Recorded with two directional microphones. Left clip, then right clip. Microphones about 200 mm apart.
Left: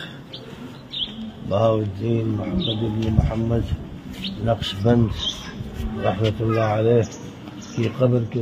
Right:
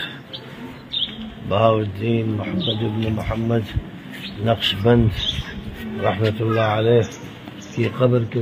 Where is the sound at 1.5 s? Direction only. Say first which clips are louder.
Right 3 dB; 20° right (ahead or behind).